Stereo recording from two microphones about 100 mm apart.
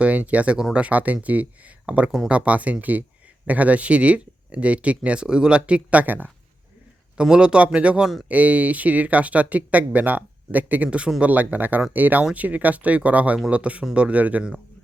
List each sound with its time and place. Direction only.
0.0 s speech: 15° right (ahead or behind)